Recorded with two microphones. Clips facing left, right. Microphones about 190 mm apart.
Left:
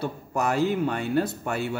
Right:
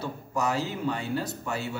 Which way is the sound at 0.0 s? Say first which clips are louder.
Left 2 dB; 55° left (ahead or behind).